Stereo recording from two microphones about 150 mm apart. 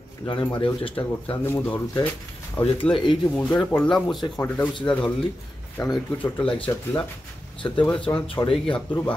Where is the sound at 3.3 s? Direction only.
10° left (ahead or behind).